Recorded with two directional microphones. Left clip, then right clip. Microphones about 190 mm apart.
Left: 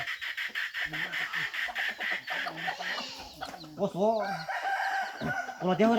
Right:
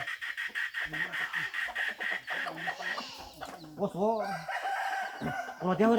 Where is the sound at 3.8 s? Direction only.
35° left (ahead or behind).